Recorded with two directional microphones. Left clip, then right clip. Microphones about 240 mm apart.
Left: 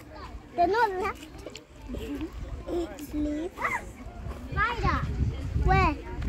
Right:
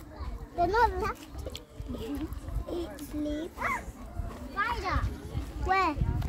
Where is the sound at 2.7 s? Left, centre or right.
Left.